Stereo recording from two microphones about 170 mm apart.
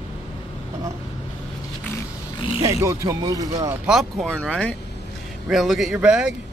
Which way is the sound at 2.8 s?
15° right (ahead or behind).